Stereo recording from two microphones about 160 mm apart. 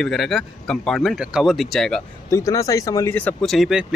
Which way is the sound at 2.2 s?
20° left (ahead or behind).